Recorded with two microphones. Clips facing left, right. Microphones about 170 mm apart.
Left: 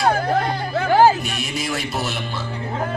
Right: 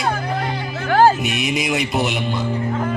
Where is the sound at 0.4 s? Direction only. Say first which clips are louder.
Left 3 dB; 55° left (ahead or behind).